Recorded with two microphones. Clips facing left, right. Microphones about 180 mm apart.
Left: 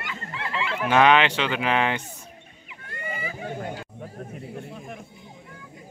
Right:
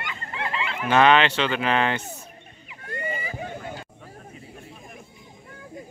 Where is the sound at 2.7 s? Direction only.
35° right (ahead or behind).